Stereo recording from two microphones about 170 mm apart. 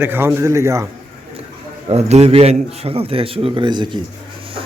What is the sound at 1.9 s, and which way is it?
A man's voice, 40° right (ahead or behind).